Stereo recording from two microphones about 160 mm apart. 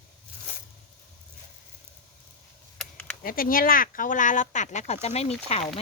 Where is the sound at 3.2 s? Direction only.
65° left (ahead or behind); by 5.8 s 40° left (ahead or behind).